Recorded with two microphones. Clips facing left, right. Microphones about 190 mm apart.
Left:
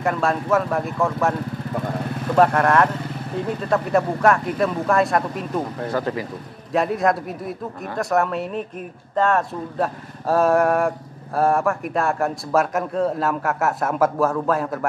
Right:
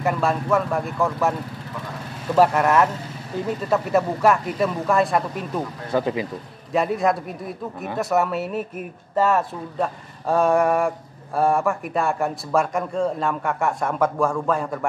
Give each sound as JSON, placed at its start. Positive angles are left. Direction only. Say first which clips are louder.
{"t": 0.0, "sound": "speech", "louder": "even", "side_deg": 0}
{"t": 1.7, "sound": "vehicle", "louder": "left 7 dB", "side_deg": 55}
{"t": 2.3, "sound": "speech", "louder": "even", "side_deg": -5}
{"t": 5.9, "sound": "speech", "louder": "right 3 dB", "side_deg": -15}
{"t": 6.7, "sound": "speech", "louder": "left 1 dB", "side_deg": 0}